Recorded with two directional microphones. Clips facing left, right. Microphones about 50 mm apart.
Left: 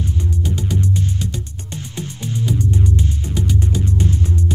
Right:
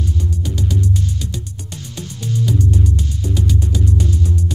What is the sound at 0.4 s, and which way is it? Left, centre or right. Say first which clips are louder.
Music: left 1 dB; left.